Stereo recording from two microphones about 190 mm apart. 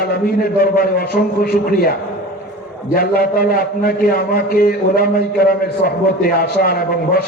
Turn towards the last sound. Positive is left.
turn(degrees=50)  # may be behind; listen again after turning